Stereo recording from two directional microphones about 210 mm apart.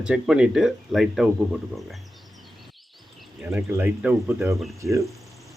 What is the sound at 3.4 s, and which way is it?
Speech, 10° right (ahead or behind).